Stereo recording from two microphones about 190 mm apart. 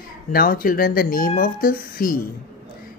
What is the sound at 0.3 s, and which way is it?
Speech, 50° left (ahead or behind).